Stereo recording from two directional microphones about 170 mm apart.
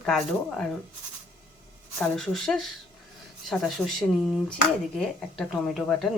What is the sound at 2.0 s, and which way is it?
Speech, 5° left (ahead or behind).